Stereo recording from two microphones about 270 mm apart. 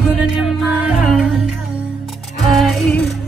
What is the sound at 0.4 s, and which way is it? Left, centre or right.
Music, centre.